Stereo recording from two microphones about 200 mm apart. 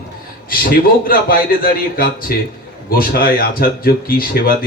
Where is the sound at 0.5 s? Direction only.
45° left (ahead or behind).